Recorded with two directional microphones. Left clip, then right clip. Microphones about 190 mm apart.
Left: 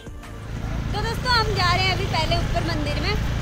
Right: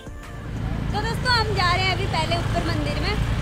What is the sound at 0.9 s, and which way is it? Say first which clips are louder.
Speech: even; 5° right (ahead or behind).